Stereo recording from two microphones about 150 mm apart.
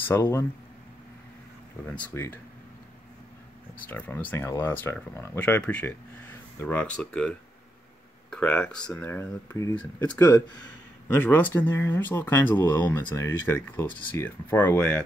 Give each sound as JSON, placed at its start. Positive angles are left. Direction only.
{"t": 0.1, "sound": "speech", "side_deg": 15}
{"t": 1.9, "sound": "speech", "side_deg": 10}
{"t": 3.9, "sound": "speech", "side_deg": 10}